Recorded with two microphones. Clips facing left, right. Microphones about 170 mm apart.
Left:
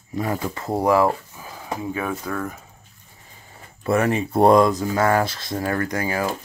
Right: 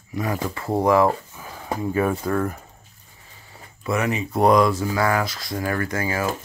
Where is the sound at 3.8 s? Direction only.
30° left (ahead or behind).